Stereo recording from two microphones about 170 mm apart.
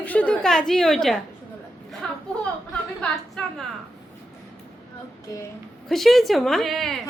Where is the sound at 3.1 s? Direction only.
Centre (ahead or behind).